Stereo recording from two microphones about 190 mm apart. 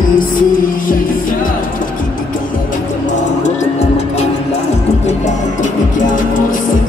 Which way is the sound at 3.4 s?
35° left (ahead or behind).